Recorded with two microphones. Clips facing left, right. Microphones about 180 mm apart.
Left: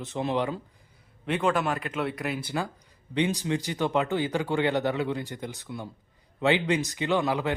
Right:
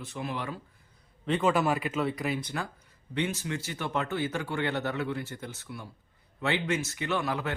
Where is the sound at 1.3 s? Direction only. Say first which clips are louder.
Even; centre (ahead or behind).